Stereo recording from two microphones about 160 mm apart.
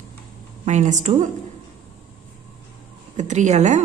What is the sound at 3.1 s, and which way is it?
Speech, 45° right (ahead or behind).